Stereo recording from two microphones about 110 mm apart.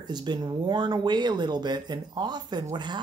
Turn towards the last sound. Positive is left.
turn(degrees=-45)  # may be behind; listen again after turning